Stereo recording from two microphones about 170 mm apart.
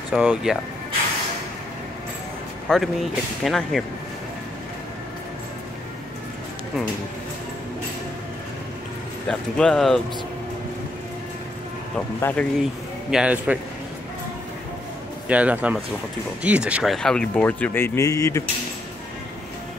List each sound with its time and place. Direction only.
0.1 s speech: 5° right (ahead or behind)
2.7 s speech: centre (ahead or behind)
9.3 s speech: 5° left (ahead or behind)
12.2 s speech: 10° left (ahead or behind)
13.1 s a man's voice: 5° right (ahead or behind)
15.2 s a man's voice: 10° right (ahead or behind); by 18.4 s 20° left (ahead or behind)